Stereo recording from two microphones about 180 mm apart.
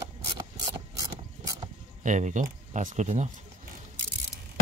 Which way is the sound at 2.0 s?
45° right (ahead or behind).